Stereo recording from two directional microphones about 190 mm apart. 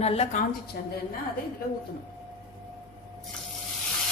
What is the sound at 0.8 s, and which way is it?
Speech, 60° left (ahead or behind).